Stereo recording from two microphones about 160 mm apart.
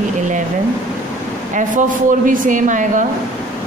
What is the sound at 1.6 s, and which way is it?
Speech, 55° right (ahead or behind).